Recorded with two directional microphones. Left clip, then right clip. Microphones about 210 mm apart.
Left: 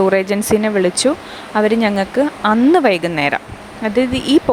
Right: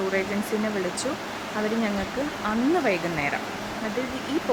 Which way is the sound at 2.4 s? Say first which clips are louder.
Left 11 dB; 50° left (ahead or behind).